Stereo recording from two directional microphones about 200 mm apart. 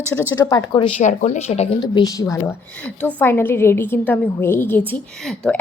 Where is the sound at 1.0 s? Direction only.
35° left (ahead or behind); by 2.2 s 20° left (ahead or behind).